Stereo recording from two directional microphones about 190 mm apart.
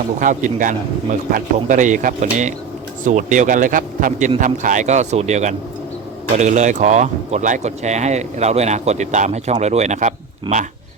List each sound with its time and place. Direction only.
0.2 s a man's voice: 45° right (ahead or behind)